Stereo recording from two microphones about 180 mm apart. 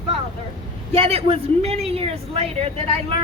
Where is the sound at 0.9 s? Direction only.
30° right (ahead or behind).